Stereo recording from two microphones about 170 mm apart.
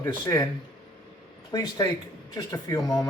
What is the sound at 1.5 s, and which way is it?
Speech, 25° left (ahead or behind).